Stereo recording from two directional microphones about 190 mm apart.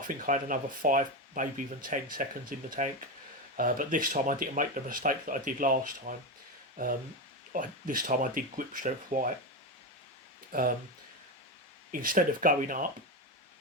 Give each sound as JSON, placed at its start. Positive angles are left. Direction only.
{"t": 0.0, "sound": "speech", "side_deg": -45}
{"t": 7.5, "sound": "speech", "side_deg": -45}
{"t": 10.5, "sound": "speech", "side_deg": -50}
{"t": 11.9, "sound": "speech", "side_deg": -45}